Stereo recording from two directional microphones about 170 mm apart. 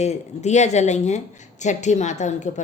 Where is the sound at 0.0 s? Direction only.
40° left (ahead or behind).